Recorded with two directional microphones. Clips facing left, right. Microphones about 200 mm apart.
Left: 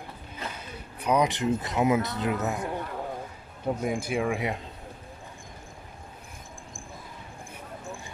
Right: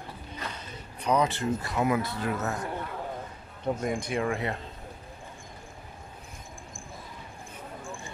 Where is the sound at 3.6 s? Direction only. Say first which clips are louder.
Left 1 dB; 5° left (ahead or behind).